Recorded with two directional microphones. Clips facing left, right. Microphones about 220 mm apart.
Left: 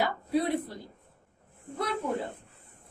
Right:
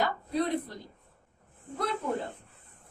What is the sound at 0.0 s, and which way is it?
Speech, 10° left (ahead or behind).